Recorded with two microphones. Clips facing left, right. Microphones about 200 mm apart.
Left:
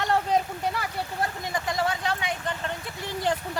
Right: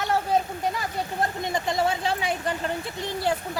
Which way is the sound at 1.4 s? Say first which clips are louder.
Right 3 dB; 25° right (ahead or behind).